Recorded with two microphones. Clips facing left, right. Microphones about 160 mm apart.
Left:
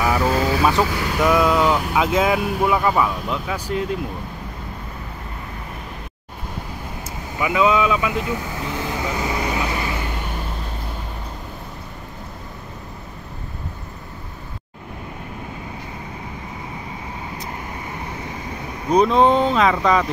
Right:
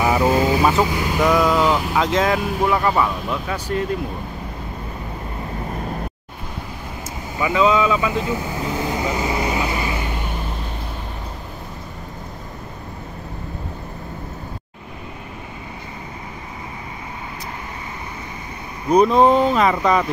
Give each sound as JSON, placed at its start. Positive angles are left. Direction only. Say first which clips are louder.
{"t": 0.0, "sound": "vehicle", "louder": "right 2 dB", "side_deg": -20}
{"t": 0.8, "sound": "speech", "louder": "right 2 dB", "side_deg": -15}
{"t": 1.2, "sound": "speech", "louder": "even", "side_deg": 0}
{"t": 7.3, "sound": "speech", "louder": "right 1 dB", "side_deg": 5}
{"t": 8.7, "sound": "vehicle", "louder": "right 2 dB", "side_deg": -15}
{"t": 18.9, "sound": "speech", "louder": "right 2 dB", "side_deg": 0}